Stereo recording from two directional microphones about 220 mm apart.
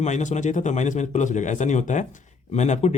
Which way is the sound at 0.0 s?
35° left (ahead or behind).